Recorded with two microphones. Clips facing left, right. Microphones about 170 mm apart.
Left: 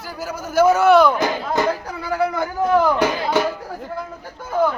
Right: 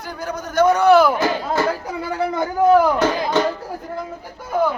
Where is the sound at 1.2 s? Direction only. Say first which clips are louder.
Even; 15° left (ahead or behind).